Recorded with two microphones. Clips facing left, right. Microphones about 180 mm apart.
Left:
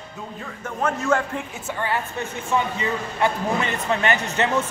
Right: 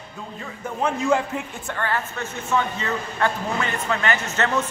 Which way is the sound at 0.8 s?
10° right (ahead or behind).